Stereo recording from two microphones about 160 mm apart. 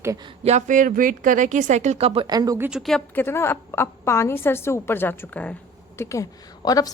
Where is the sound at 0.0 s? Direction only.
20° right (ahead or behind).